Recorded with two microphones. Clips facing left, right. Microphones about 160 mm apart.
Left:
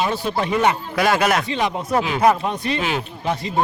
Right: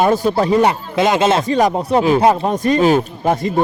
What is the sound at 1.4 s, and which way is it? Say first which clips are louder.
Speech: right 7 dB; 45° right (ahead or behind).